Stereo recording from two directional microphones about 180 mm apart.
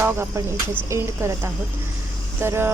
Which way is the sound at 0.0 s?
10° right (ahead or behind).